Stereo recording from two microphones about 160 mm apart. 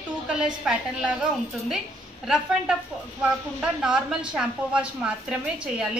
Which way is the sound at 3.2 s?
5° right (ahead or behind).